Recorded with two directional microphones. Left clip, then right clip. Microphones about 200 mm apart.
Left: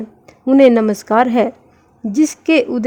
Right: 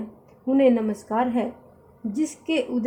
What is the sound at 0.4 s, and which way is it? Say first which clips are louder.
A woman's voice: left 10 dB; 55° left (ahead or behind).